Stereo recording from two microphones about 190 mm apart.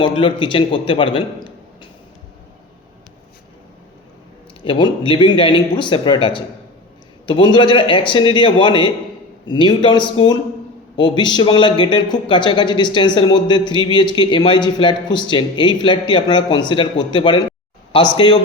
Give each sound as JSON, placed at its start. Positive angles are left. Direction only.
{"t": 0.0, "sound": "speech", "side_deg": 25}
{"t": 4.6, "sound": "speech", "side_deg": 25}